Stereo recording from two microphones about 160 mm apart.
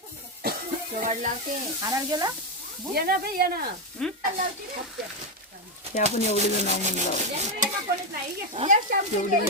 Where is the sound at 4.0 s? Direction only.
5° left (ahead or behind).